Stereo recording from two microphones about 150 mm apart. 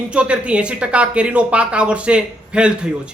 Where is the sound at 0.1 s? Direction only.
5° right (ahead or behind).